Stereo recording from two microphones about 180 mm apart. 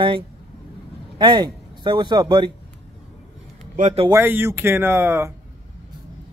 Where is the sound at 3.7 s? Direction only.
40° right (ahead or behind).